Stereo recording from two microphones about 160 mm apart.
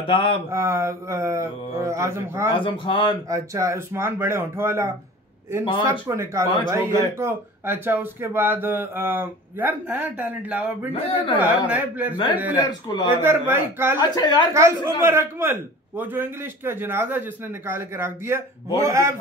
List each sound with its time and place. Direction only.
0.0 s speech: 30° left (ahead or behind)
0.5 s speech: 15° right (ahead or behind)
2.5 s speech: 30° left (ahead or behind)
3.3 s speech: 20° right (ahead or behind)
10.9 s speech: 35° left (ahead or behind)
11.3 s speech: 10° right (ahead or behind)
12.6 s speech: 25° left (ahead or behind)
13.1 s speech: 15° right (ahead or behind)
14.1 s speech: 25° left (ahead or behind)
14.5 s speech: 15° right (ahead or behind)